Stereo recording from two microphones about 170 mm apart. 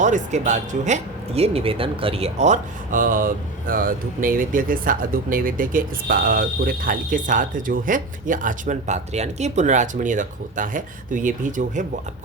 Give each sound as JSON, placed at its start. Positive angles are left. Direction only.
{"t": 0.0, "sound": "speech", "side_deg": -45}